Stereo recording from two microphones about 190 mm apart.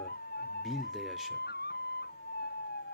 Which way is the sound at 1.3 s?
60° left (ahead or behind).